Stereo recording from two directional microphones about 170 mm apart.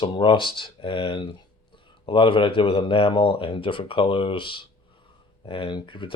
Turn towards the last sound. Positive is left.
turn(degrees=30)  # may be behind; listen again after turning